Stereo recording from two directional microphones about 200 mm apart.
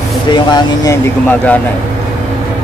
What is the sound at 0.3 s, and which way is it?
Speech, 20° left (ahead or behind).